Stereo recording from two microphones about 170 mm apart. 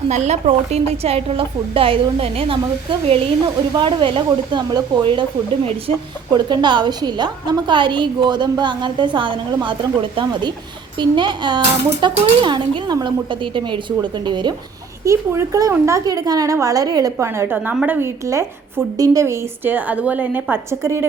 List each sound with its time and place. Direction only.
0.1 s a woman's voice: 40° right (ahead or behind)
15.0 s a woman's voice: 15° right (ahead or behind)